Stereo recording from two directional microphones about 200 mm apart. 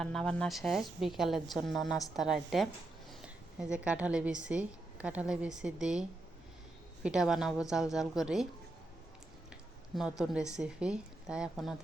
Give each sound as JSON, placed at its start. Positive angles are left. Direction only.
{"t": 0.0, "sound": "a woman's voice", "side_deg": 5}
{"t": 9.9, "sound": "a woman's voice", "side_deg": 0}